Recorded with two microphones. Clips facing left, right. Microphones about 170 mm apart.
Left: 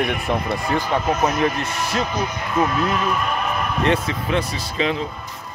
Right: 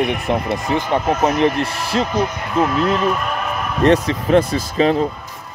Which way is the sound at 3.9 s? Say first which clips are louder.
Right 9 dB; 40° right (ahead or behind).